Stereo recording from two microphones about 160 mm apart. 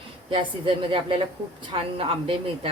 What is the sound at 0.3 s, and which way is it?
Speech, 35° right (ahead or behind).